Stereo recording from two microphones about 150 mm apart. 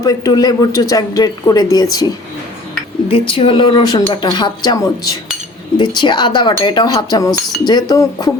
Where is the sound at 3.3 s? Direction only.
35° left (ahead or behind).